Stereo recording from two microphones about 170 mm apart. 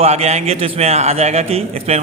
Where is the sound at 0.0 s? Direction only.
40° right (ahead or behind).